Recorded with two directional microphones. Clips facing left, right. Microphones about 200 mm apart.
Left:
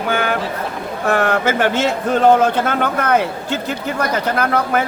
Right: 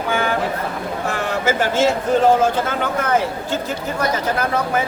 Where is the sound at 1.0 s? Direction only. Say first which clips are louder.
Left 5 dB; 60° left (ahead or behind).